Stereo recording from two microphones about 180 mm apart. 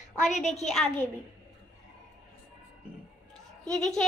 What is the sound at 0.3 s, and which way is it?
Speech, 40° left (ahead or behind).